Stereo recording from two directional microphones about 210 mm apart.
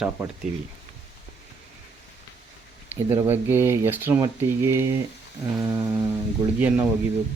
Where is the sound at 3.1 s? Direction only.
10° right (ahead or behind).